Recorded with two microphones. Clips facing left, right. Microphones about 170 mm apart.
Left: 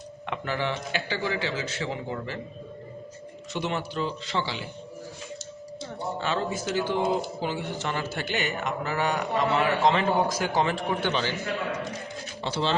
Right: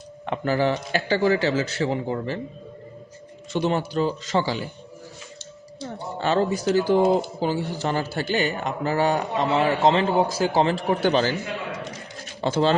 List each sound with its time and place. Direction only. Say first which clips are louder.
0.3 s speech: right 7 dB; 40° right (ahead or behind)
3.5 s speech: right 7 dB; 35° right (ahead or behind)
6.1 s speech: right 8 dB; 40° right (ahead or behind)
12.4 s speech: right 8 dB; 45° right (ahead or behind)